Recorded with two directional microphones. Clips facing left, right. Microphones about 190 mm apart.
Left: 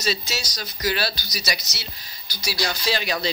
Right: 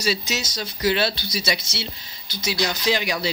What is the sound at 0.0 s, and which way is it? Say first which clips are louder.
Speech: right 2 dB; 15° right (ahead or behind).